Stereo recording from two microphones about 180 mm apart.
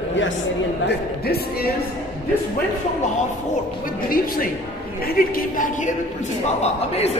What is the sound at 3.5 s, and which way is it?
A man's voice, 55° left (ahead or behind).